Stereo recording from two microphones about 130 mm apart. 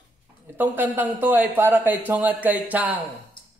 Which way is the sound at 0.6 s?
15° right (ahead or behind).